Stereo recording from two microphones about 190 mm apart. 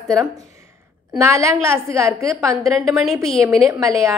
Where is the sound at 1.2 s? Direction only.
15° right (ahead or behind).